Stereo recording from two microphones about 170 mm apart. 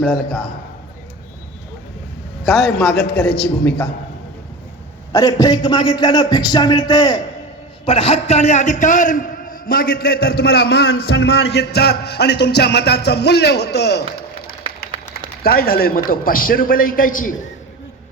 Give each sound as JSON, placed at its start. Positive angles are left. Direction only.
{"t": 0.1, "sound": "a man's voice", "side_deg": 70}
{"t": 2.6, "sound": "a man's voice", "side_deg": 70}
{"t": 3.6, "sound": "a man's voice", "side_deg": 10}
{"t": 5.1, "sound": "music", "side_deg": 20}
{"t": 7.9, "sound": "a man's voice", "side_deg": 35}
{"t": 14.8, "sound": "a man's voice", "side_deg": 65}